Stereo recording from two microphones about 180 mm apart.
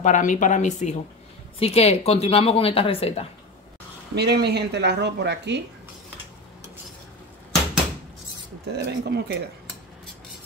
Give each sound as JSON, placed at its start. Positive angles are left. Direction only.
{"t": 0.0, "sound": "a woman's voice", "side_deg": 45}
{"t": 4.1, "sound": "speech", "side_deg": -65}
{"t": 8.7, "sound": "speech", "side_deg": -65}